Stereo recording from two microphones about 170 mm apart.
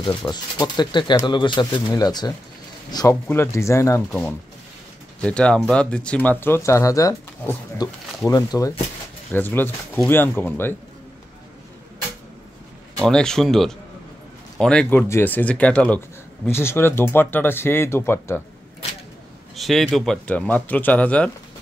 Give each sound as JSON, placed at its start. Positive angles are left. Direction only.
{"t": 0.0, "sound": "speech", "side_deg": 25}
{"t": 13.0, "sound": "speech", "side_deg": 5}
{"t": 19.5, "sound": "speech", "side_deg": 0}